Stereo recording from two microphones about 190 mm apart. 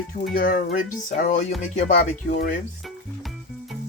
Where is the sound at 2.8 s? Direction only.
Centre (ahead or behind).